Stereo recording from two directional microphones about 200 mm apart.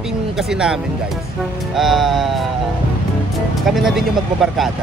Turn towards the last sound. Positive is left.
turn(degrees=0)  # may be behind; listen again after turning